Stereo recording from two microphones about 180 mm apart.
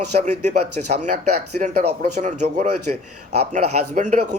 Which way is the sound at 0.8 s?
45° right (ahead or behind).